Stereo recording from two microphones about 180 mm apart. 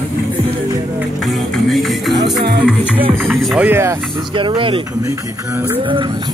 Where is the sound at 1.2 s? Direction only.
Centre (ahead or behind).